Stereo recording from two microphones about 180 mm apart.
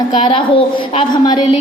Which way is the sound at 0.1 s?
25° left (ahead or behind).